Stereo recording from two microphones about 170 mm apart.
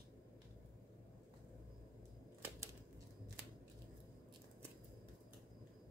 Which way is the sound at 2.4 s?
20° right (ahead or behind).